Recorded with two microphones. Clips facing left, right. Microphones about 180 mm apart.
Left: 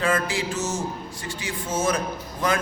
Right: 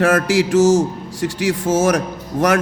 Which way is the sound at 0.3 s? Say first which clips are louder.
Right 14 dB; 90° right.